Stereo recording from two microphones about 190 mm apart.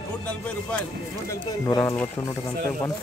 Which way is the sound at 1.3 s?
20° left (ahead or behind).